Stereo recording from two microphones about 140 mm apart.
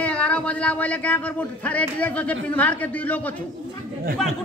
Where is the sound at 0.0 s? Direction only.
10° left (ahead or behind).